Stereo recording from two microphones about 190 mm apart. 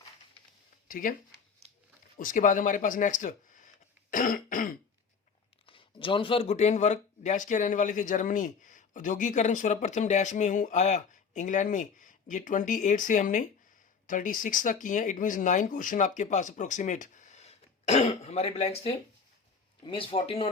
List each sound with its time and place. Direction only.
0.9 s speech: 45° left (ahead or behind)
2.1 s speech: 45° left (ahead or behind)
5.6 s a man's voice: 25° left (ahead or behind)